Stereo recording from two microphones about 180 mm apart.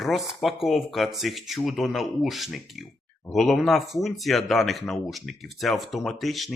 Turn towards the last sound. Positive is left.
turn(degrees=0)  # may be behind; listen again after turning